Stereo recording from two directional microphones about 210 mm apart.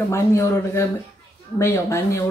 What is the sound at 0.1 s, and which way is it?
Speech, 15° left (ahead or behind).